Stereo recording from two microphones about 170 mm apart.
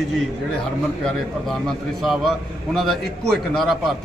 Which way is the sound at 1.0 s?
Centre (ahead or behind).